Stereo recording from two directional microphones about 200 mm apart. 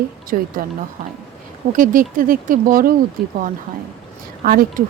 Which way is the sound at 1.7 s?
45° right (ahead or behind).